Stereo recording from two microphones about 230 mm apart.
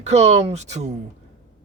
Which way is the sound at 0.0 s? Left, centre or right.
Right.